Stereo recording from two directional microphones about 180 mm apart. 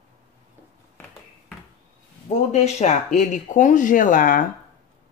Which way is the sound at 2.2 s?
35° left (ahead or behind).